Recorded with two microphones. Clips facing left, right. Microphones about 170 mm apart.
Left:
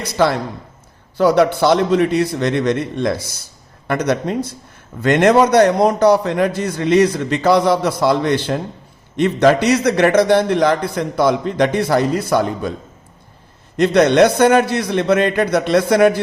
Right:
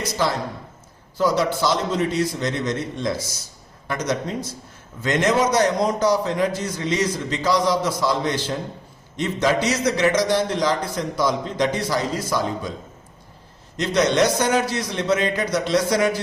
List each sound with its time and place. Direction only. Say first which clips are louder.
0.0 s a man's voice: left 6 dB; 65° left (ahead or behind)
13.7 s a man's voice: left 7 dB; 60° left (ahead or behind)